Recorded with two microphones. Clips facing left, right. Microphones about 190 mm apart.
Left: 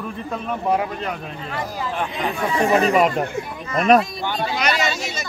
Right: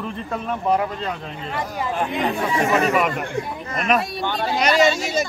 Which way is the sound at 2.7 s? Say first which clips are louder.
Left 4 dB; 30° left (ahead or behind).